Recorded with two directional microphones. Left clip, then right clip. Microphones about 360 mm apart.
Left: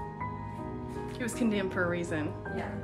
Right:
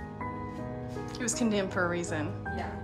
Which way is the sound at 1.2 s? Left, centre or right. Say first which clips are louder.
Right 2 dB; centre.